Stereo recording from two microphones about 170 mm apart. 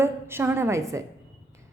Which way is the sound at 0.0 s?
15° right (ahead or behind).